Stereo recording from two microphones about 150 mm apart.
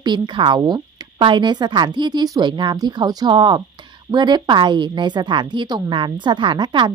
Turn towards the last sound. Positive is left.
turn(degrees=-30)  # may be behind; listen again after turning